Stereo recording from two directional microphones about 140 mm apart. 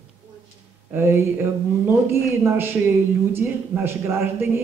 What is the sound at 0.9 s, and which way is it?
A woman's voice, 15° right (ahead or behind).